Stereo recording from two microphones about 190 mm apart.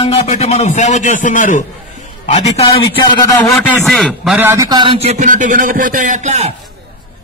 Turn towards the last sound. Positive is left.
turn(degrees=-35)  # may be behind; listen again after turning